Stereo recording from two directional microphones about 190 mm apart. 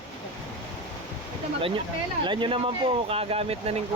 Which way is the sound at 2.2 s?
25° right (ahead or behind).